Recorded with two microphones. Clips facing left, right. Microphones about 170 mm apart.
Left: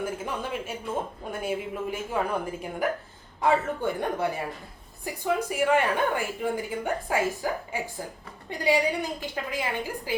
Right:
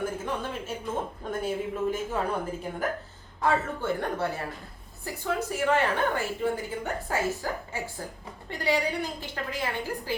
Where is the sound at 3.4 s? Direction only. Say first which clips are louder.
Left 2 dB; 15° left (ahead or behind).